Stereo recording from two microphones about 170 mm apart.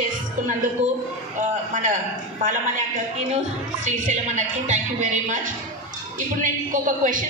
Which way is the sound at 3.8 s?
45° right (ahead or behind).